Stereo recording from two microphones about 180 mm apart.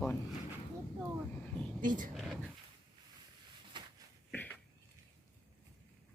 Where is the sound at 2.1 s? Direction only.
Centre (ahead or behind).